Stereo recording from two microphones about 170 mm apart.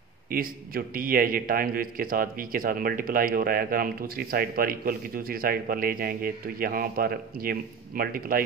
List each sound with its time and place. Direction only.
0.3 s a man's voice: 60° right (ahead or behind)